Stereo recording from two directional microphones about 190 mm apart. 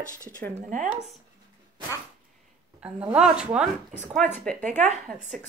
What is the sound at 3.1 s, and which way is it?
Speech, 5° right (ahead or behind).